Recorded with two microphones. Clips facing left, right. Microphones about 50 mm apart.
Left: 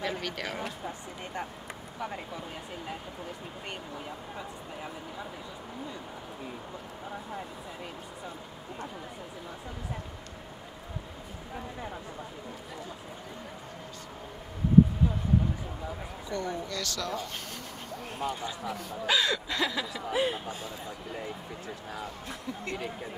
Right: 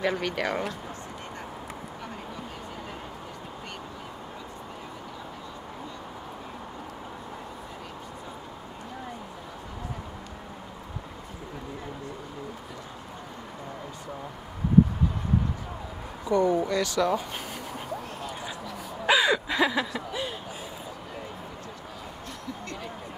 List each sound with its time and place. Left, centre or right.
0.0 s speech: centre
16.3 s speech: centre
19.0 s a sound: centre
20.1 s speech: centre